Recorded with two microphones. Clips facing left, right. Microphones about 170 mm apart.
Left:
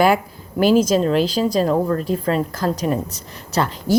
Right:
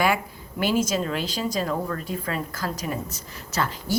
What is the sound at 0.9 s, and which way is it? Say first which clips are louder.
A woman's voice: left 10 dB; 35° left (ahead or behind).